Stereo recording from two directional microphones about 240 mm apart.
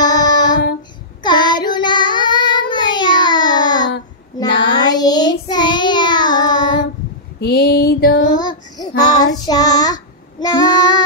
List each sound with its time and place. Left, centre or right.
0.0 s child singing: centre
7.3 s female singing: left
8.4 s child singing: centre